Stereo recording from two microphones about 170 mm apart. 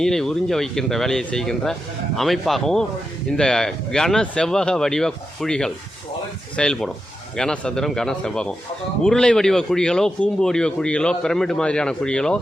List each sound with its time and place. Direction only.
0.0 s speech: 5° left (ahead or behind)